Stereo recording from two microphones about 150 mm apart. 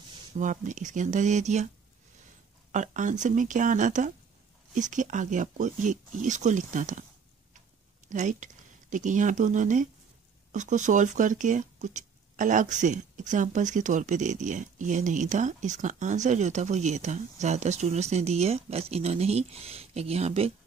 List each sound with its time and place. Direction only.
0.4 s speech: 55° right (ahead or behind)
2.7 s speech: 55° right (ahead or behind)
8.1 s speech: 55° right (ahead or behind)